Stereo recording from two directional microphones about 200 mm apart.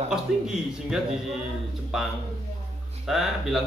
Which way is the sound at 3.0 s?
Centre (ahead or behind).